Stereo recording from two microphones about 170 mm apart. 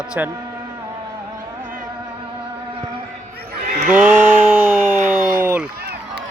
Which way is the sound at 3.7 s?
50° right (ahead or behind).